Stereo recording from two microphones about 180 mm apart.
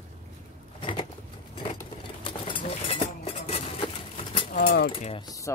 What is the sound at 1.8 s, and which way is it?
Cutlery, 25° left (ahead or behind).